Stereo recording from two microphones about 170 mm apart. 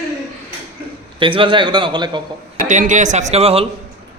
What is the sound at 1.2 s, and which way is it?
A man's voice, 30° right (ahead or behind).